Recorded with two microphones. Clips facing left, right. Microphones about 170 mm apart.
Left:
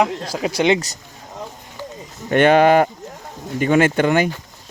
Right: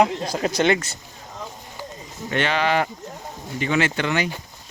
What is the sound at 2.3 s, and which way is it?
Speech, 50° left (ahead or behind).